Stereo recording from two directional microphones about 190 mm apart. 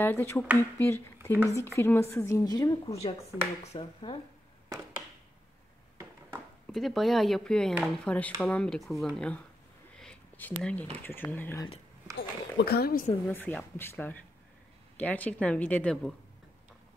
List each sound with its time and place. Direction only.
0.0 s speech: 10° left (ahead or behind)
2.9 s speech: 35° left (ahead or behind)
6.7 s speech: centre (ahead or behind)
9.9 s a sound: 5° left (ahead or behind)
10.6 s speech: 5° left (ahead or behind)
12.2 s speech: 55° left (ahead or behind)
13.3 s speech: 10° left (ahead or behind)